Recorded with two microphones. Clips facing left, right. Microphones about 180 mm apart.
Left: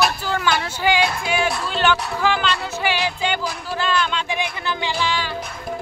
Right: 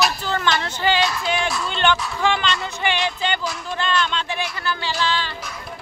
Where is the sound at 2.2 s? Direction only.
5° left (ahead or behind).